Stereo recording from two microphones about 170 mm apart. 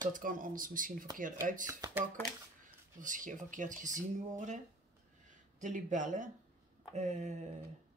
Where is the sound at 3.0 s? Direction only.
50° right (ahead or behind).